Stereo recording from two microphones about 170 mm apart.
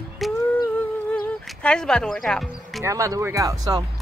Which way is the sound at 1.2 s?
5° left (ahead or behind).